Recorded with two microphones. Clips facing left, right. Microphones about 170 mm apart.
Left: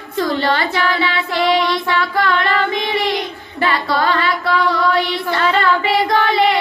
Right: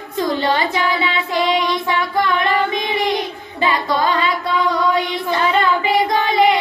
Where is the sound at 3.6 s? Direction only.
20° right (ahead or behind).